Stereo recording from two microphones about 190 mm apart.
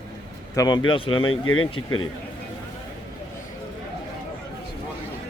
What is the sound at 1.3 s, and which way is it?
Speech, 90° left.